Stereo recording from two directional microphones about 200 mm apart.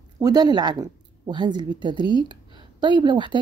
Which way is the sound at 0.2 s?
20° right (ahead or behind).